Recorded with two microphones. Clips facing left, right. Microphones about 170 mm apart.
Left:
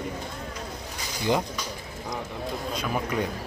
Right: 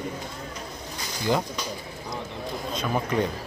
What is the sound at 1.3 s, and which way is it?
Speech, 15° left (ahead or behind).